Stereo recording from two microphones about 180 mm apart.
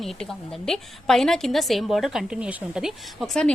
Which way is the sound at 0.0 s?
Centre (ahead or behind).